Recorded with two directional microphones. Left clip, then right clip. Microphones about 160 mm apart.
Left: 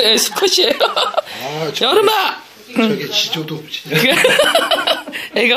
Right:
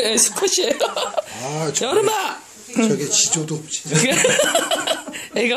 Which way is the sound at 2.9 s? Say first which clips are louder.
Left 2 dB; 60° right (ahead or behind).